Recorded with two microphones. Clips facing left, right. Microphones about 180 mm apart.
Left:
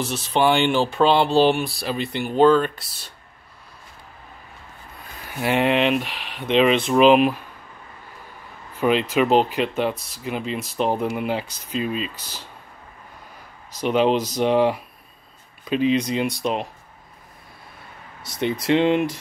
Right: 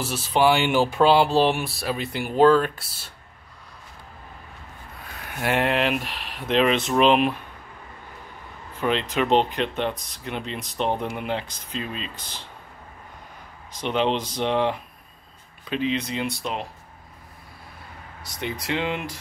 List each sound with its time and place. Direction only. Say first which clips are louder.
0.0 s speech: even; 10° right (ahead or behind)
5.2 s speech: left 3 dB; centre (ahead or behind)
8.7 s speech: left 5 dB; 10° left (ahead or behind)
13.7 s speech: left 5 dB; 10° left (ahead or behind)
15.9 s speech: left 6 dB; 15° left (ahead or behind)
18.4 s speech: left 8 dB; 25° left (ahead or behind)